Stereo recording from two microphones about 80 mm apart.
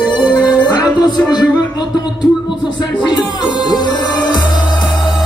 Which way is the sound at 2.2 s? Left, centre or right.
Left.